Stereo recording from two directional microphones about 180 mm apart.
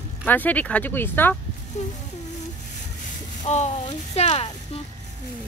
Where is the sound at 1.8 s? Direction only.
40° left (ahead or behind).